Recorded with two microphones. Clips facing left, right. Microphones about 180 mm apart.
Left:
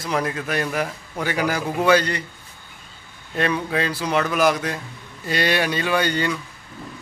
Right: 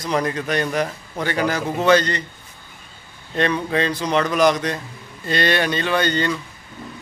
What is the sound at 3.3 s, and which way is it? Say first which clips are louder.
A man's voice: right 2 dB; 5° left (ahead or behind).